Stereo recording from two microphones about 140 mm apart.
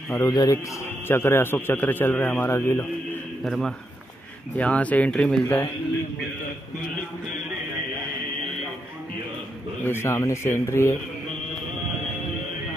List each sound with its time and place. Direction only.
0.1 s a man's voice: 25° left (ahead or behind)
3.4 s a man's voice: centre (ahead or behind)
9.8 s speech: 20° left (ahead or behind)